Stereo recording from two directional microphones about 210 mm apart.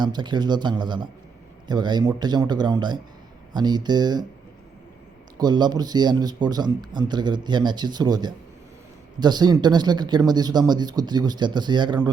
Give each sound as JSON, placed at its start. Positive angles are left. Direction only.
{"t": 0.0, "sound": "a man's voice", "side_deg": -20}
{"t": 5.4, "sound": "a man's voice", "side_deg": -20}